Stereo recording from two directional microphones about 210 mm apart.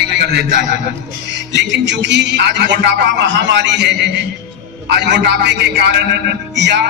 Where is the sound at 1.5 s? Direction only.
55° right (ahead or behind).